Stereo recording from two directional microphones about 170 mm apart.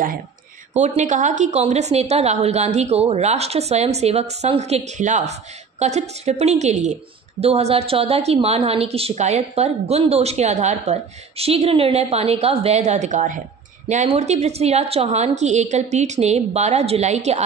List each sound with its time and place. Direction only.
0.7 s a woman's voice: 45° right (ahead or behind)